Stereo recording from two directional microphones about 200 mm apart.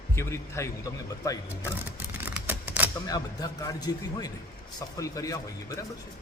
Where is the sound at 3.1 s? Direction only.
20° left (ahead or behind).